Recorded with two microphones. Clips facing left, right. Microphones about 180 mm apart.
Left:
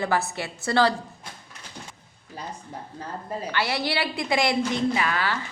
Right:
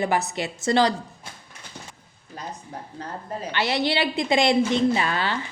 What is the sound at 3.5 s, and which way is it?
A woman's voice, 20° right (ahead or behind).